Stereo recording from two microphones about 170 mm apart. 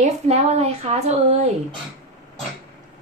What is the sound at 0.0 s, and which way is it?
A woman's voice, 40° right (ahead or behind).